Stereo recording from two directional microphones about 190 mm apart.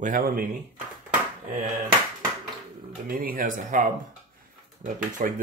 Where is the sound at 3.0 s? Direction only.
50° right (ahead or behind).